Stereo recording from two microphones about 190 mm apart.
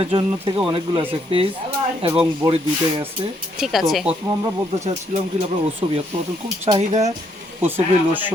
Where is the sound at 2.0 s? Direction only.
30° right (ahead or behind).